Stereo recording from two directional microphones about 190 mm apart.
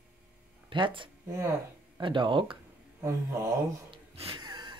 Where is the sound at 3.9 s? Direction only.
30° right (ahead or behind).